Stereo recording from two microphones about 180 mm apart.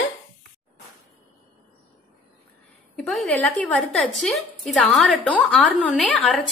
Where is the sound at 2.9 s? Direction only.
5° left (ahead or behind).